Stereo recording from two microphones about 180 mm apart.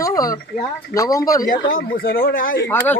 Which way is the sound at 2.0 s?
55° left (ahead or behind).